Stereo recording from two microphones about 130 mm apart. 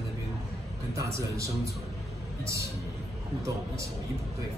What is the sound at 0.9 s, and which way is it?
Speech, 25° right (ahead or behind).